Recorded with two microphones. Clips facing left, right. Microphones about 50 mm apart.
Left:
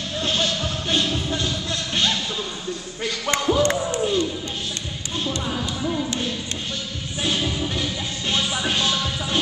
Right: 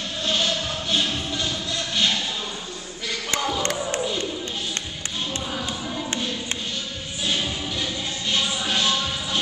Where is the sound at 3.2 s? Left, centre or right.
Left.